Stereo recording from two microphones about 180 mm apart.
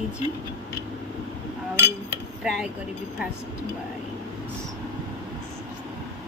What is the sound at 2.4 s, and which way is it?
Speech, 5° right (ahead or behind).